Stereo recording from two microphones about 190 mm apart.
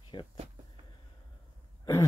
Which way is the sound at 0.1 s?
25° left (ahead or behind).